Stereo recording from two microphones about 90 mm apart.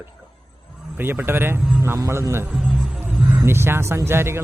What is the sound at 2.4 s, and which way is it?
Music, 5° right (ahead or behind).